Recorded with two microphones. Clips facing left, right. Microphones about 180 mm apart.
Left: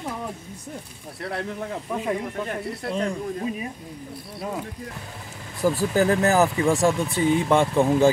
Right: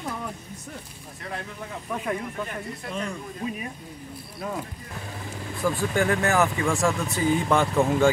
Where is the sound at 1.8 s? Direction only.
25° left (ahead or behind).